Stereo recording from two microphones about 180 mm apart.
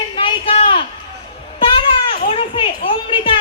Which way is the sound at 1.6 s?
30° left (ahead or behind).